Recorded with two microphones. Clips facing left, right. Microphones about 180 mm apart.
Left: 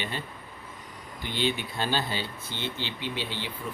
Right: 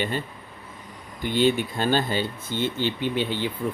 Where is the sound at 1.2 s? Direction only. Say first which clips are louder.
Right 8 dB; 50° right (ahead or behind).